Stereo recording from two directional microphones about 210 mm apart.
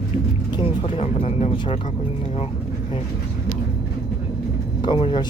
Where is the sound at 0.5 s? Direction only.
25° left (ahead or behind).